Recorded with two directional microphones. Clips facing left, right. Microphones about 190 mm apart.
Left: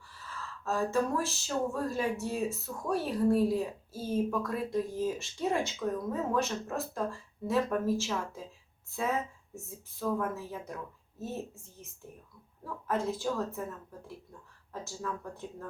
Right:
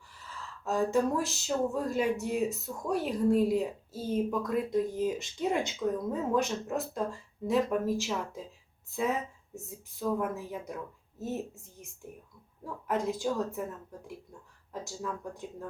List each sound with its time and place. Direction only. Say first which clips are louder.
0.6 s speech: right 2 dB; 15° right (ahead or behind)
9.6 s speech: right 1 dB; 15° right (ahead or behind)